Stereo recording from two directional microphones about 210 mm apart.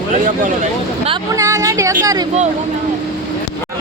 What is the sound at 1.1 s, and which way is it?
Speech, 15° right (ahead or behind).